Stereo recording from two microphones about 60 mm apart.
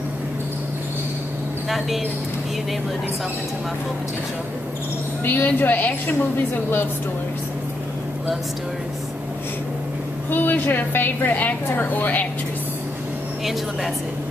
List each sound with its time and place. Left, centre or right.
5.2 s a woman's voice: left
10.3 s a woman's voice: left